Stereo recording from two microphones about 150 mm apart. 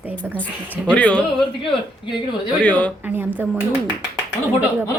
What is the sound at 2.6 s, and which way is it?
Speech, 10° left (ahead or behind).